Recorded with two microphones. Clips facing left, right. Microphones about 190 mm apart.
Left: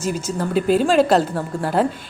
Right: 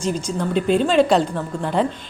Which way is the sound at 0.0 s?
5° left (ahead or behind).